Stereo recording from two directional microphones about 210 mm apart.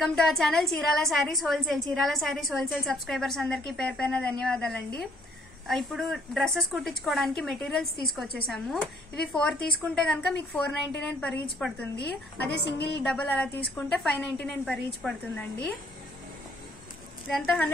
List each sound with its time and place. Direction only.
0.0 s a woman's voice: centre (ahead or behind)
12.0 s a woman's voice: 50° left (ahead or behind)
13.0 s a woman's voice: 5° left (ahead or behind)
17.3 s a woman's voice: 5° left (ahead or behind)